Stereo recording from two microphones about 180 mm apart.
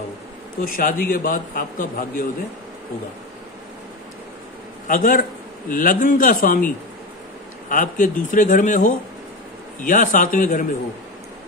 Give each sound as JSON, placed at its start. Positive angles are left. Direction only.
{"t": 0.7, "sound": "a man's voice", "side_deg": 50}
{"t": 4.8, "sound": "a man's voice", "side_deg": 50}
{"t": 7.7, "sound": "a man's voice", "side_deg": 45}